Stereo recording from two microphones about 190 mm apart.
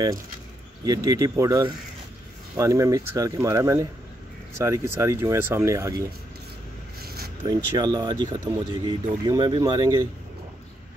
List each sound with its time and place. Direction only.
0.8 s speech: 20° right (ahead or behind)
7.0 s a sound: 55° right (ahead or behind)
7.4 s speech: 20° right (ahead or behind)